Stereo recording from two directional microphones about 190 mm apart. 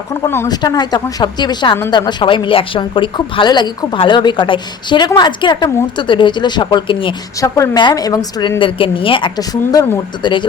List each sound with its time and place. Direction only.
0.1 s a woman's voice: 15° left (ahead or behind)